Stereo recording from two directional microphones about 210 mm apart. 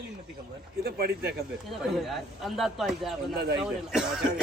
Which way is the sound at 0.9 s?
50° right (ahead or behind).